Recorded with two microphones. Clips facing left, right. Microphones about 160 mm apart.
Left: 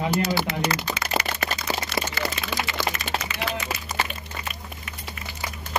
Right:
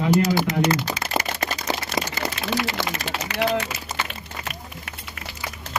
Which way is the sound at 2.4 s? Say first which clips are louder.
Right 3 dB; 70° right (ahead or behind).